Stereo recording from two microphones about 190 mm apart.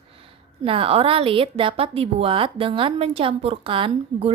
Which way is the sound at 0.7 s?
30° right (ahead or behind).